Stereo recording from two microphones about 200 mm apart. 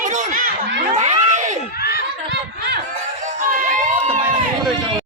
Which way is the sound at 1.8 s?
50° left (ahead or behind).